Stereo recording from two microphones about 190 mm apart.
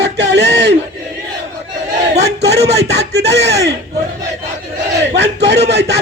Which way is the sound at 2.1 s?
60° right (ahead or behind).